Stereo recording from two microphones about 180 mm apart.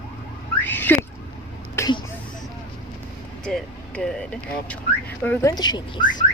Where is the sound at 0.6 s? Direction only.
10° left (ahead or behind).